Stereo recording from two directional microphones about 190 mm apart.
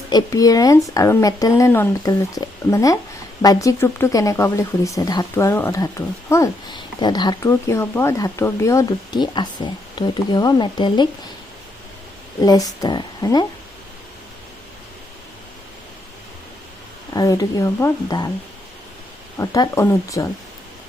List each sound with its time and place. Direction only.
0.1 s speech: 20° left (ahead or behind)
12.4 s a woman's voice: 20° left (ahead or behind)
17.2 s speech: 20° left (ahead or behind)
19.4 s speech: 20° left (ahead or behind)